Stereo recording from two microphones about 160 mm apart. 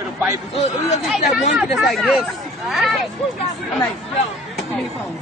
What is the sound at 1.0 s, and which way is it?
Speech, 5° right (ahead or behind).